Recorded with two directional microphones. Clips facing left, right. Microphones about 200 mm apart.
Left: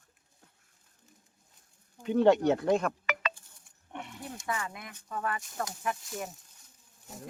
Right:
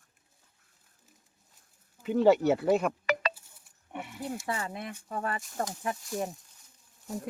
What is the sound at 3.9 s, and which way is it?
Roaring cats, 5° right (ahead or behind).